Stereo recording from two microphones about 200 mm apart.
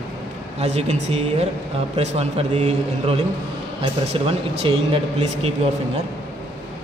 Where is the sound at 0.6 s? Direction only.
35° right (ahead or behind).